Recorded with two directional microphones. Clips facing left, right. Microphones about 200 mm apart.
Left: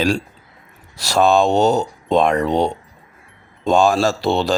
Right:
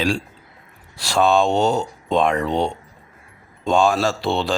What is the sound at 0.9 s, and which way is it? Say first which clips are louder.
Speech: left 2 dB; 40° left (ahead or behind).